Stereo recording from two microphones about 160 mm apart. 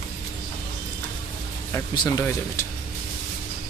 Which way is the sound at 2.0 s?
20° left (ahead or behind).